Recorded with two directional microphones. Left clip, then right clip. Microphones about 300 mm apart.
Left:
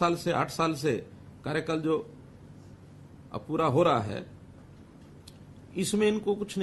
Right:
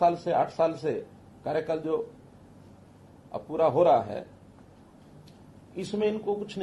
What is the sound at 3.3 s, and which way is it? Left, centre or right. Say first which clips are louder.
Speech: right 3 dB; left.